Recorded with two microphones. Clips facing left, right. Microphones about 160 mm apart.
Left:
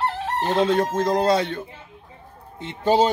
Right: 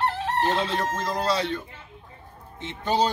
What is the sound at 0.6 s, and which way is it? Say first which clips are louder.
Speech: left 7 dB; 50° left (ahead or behind).